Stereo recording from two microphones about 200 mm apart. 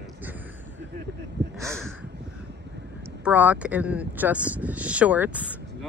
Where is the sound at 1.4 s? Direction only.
60° right (ahead or behind).